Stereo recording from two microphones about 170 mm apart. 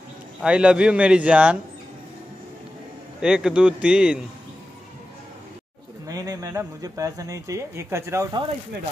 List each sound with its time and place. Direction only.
0.4 s a man's voice: 5° right (ahead or behind)
3.2 s a man's voice: 5° right (ahead or behind)
6.0 s speech: 20° right (ahead or behind)